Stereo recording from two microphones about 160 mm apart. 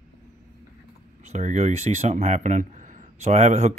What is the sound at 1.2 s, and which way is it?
Speech, 45° right (ahead or behind).